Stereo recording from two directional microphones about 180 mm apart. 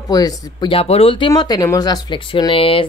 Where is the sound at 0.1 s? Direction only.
20° left (ahead or behind).